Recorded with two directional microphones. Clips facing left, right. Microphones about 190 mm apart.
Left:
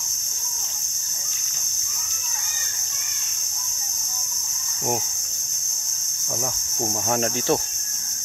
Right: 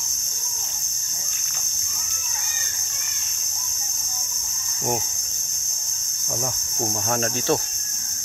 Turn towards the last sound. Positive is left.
turn(degrees=15)  # may be behind; listen again after turning